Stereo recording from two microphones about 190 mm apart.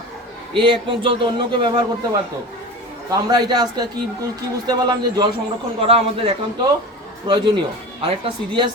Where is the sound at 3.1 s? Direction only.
20° right (ahead or behind).